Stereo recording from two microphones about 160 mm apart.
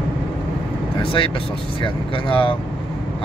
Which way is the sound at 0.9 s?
30° left (ahead or behind).